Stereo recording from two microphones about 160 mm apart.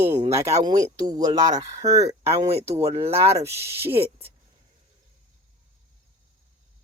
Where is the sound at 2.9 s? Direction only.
40° right (ahead or behind).